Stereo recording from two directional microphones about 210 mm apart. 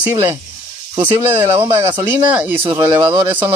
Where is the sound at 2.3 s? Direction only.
10° right (ahead or behind).